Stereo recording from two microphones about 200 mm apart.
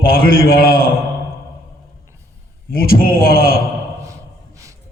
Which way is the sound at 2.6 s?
45° left (ahead or behind).